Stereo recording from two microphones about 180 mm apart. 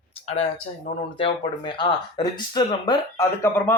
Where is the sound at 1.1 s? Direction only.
25° left (ahead or behind).